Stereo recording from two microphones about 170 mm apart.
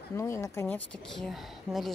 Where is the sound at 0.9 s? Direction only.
Centre (ahead or behind).